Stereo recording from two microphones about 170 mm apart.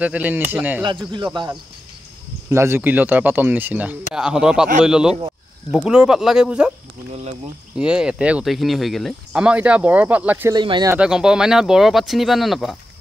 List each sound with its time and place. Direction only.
0.0 s speech: 10° right (ahead or behind)
1.1 s speech: 25° right (ahead or behind)
2.5 s speech: 15° right (ahead or behind)
7.7 s speech: 5° right (ahead or behind)
10.5 s speech: 25° right (ahead or behind)
11.0 s speech: 5° right (ahead or behind)